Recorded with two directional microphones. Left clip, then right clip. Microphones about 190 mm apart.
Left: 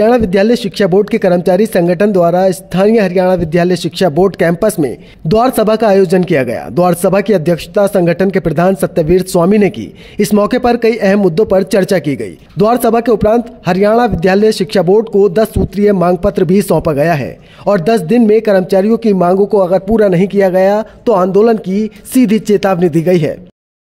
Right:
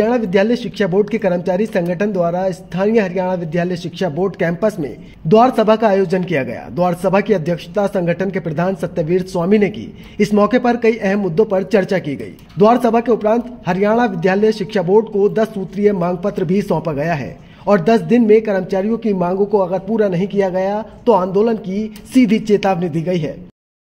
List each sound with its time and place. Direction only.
0.0 s speech: 35° left (ahead or behind)